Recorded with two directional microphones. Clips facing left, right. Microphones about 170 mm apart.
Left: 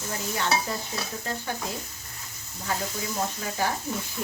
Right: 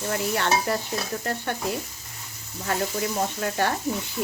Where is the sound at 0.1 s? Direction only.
65° right (ahead or behind).